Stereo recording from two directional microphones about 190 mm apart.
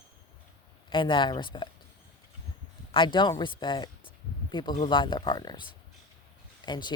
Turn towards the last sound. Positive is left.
turn(degrees=20)  # may be behind; listen again after turning